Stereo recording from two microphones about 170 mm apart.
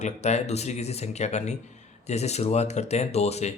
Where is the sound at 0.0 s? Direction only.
40° left (ahead or behind).